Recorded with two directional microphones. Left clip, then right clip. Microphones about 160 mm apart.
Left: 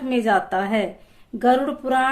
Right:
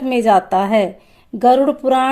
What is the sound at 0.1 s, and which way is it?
Speech, 45° right (ahead or behind).